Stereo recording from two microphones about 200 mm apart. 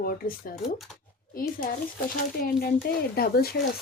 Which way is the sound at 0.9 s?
Centre (ahead or behind).